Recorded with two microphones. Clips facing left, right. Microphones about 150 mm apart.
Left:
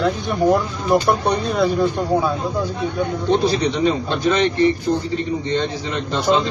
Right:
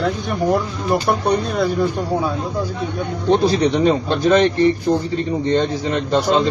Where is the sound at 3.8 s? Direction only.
45° right (ahead or behind).